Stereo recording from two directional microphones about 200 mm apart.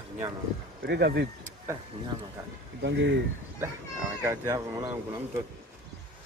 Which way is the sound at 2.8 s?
60° right (ahead or behind).